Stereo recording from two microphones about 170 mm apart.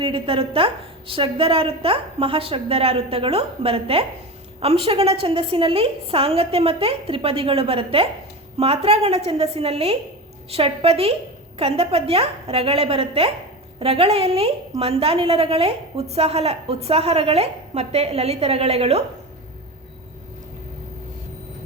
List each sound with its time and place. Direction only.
0.0 s a woman's voice: 30° right (ahead or behind)